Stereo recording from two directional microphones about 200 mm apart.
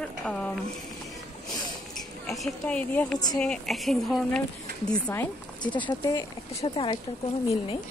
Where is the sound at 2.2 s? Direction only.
Centre (ahead or behind).